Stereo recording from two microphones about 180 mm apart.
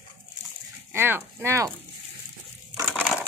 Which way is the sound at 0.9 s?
10° right (ahead or behind).